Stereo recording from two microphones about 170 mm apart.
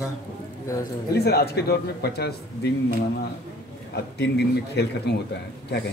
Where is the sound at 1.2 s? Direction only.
70° left (ahead or behind).